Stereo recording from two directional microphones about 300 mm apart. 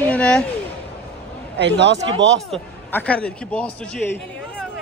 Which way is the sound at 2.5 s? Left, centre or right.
Centre.